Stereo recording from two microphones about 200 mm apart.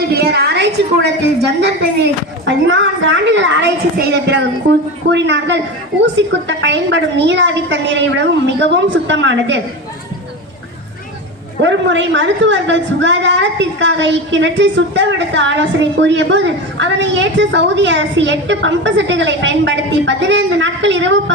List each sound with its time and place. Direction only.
0.1 s a woman's voice: 50° right (ahead or behind)
11.6 s a woman's voice: 65° right (ahead or behind)